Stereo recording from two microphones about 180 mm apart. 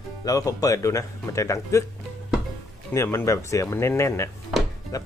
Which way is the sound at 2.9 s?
15° left (ahead or behind).